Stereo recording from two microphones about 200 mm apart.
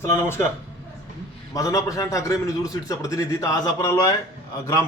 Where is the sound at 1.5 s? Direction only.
15° left (ahead or behind).